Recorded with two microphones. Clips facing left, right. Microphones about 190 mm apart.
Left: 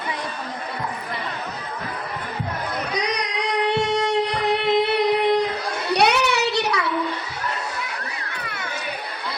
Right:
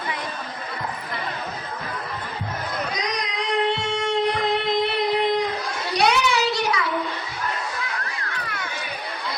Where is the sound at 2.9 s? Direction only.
70° left (ahead or behind).